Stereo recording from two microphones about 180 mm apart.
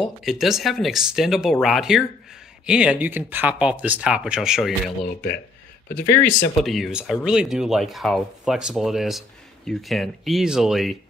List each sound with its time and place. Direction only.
0.0 s speech: centre (ahead or behind)
5.0 s speech: 55° left (ahead or behind)
6.6 s speech: centre (ahead or behind)